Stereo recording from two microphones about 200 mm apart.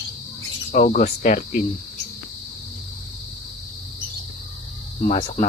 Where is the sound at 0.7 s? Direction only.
40° left (ahead or behind).